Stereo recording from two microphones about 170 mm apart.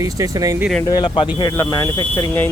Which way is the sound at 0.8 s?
25° left (ahead or behind).